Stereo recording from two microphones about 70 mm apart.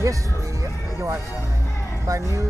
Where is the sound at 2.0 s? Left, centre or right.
Right.